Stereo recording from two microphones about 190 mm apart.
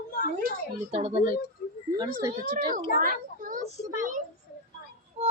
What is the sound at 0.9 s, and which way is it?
Speech, 30° right (ahead or behind).